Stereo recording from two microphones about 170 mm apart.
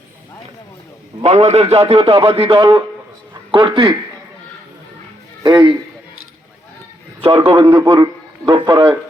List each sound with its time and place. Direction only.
1.2 s a man's voice: 40° right (ahead or behind)
5.4 s a man's voice: 25° right (ahead or behind)
7.2 s a man's voice: 30° right (ahead or behind)